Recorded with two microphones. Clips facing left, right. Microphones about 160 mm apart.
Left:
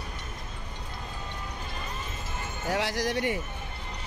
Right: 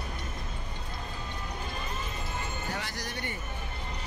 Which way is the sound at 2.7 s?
90° left.